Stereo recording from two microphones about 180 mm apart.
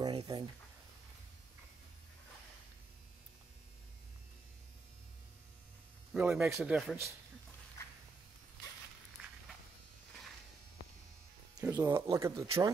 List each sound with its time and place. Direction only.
0.0 s a sound: 20° right (ahead or behind)
6.1 s speech: 5° right (ahead or behind)
11.6 s speech: 15° right (ahead or behind)